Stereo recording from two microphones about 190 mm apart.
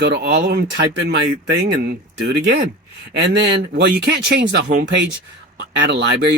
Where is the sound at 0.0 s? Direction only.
60° right (ahead or behind).